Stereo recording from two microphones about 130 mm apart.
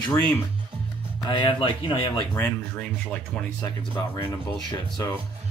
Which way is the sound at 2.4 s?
10° left (ahead or behind).